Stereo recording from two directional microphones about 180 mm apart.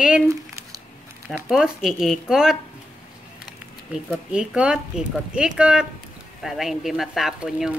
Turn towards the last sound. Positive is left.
turn(degrees=-5)  # may be behind; listen again after turning